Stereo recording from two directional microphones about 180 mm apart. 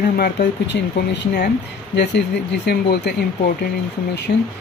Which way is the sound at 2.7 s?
65° left (ahead or behind).